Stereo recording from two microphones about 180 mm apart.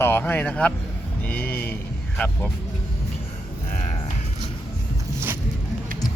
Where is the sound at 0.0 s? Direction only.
10° left (ahead or behind).